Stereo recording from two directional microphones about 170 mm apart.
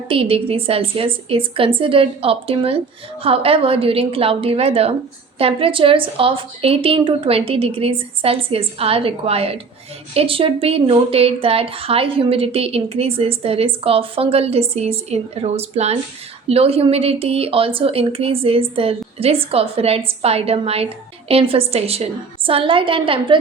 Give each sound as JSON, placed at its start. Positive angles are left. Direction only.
{"t": 0.1, "sound": "a woman's voice", "side_deg": -35}